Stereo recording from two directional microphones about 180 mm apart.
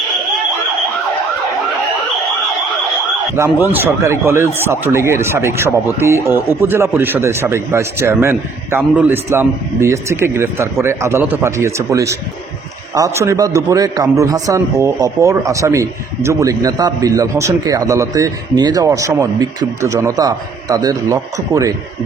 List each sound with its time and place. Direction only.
3.3 s a man's voice: 15° right (ahead or behind)